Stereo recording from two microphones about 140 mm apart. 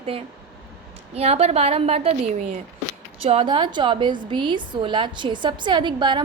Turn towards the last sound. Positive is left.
turn(degrees=-35)  # may be behind; listen again after turning